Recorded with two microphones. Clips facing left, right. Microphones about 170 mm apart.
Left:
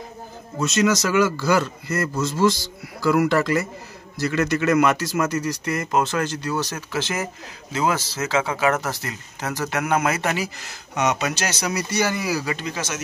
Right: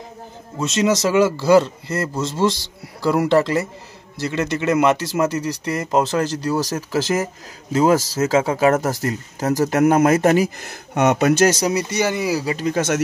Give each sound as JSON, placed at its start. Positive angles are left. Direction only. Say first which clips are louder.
{"t": 0.6, "sound": "speech", "louder": "right 1 dB", "side_deg": -30}
{"t": 11.7, "sound": "speech", "louder": "right 3 dB", "side_deg": -20}
{"t": 12.6, "sound": "speech", "louder": "right 9 dB", "side_deg": -55}